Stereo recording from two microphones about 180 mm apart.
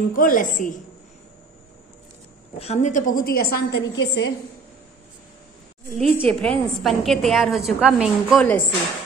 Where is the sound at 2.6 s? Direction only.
40° left (ahead or behind); by 4.3 s 70° left (ahead or behind).